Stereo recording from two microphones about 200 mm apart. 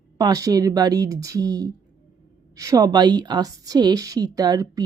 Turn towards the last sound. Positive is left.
turn(degrees=-20)  # may be behind; listen again after turning